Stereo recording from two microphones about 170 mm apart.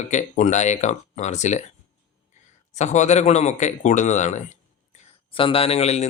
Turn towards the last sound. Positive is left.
turn(degrees=40)  # may be behind; listen again after turning